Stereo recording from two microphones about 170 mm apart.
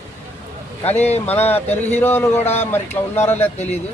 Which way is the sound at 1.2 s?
10° left (ahead or behind).